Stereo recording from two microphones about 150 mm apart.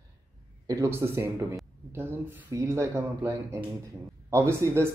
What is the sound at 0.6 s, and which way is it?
A man's voice, 20° right (ahead or behind).